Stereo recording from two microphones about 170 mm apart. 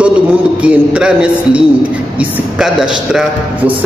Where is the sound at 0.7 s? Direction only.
5° right (ahead or behind).